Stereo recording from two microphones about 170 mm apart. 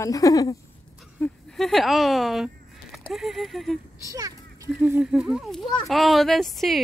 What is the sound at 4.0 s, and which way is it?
Speech, 20° right (ahead or behind).